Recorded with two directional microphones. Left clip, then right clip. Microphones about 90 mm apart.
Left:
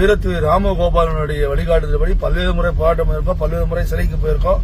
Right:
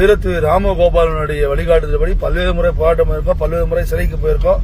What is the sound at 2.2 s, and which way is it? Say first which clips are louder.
Speech: right 3 dB; 15° left (ahead or behind).